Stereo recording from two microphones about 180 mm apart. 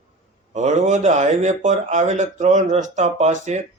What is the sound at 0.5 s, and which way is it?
Speech, 40° right (ahead or behind).